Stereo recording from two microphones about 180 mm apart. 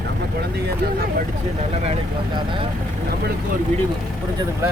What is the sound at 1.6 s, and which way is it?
Speech, 35° right (ahead or behind).